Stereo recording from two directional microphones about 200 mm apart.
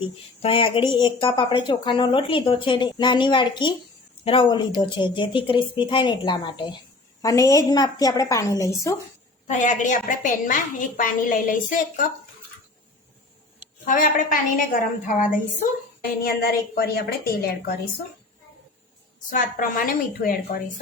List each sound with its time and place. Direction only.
0.0 s a woman's voice: 25° left (ahead or behind)
9.5 s a woman's voice: 40° left (ahead or behind)
13.8 s a woman's voice: 40° left (ahead or behind)
19.3 s a woman's voice: 45° left (ahead or behind)